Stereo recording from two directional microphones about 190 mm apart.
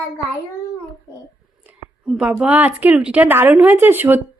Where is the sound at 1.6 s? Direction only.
5° right (ahead or behind).